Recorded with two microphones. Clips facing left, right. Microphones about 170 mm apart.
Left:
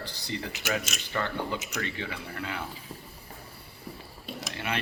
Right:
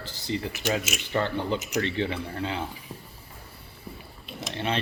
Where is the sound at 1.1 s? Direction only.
20° right (ahead or behind).